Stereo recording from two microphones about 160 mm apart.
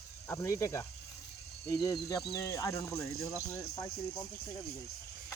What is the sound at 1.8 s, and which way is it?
Speech, 20° left (ahead or behind).